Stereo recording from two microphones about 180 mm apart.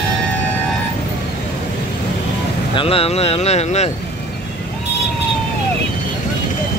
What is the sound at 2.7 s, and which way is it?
Speech, 30° left (ahead or behind).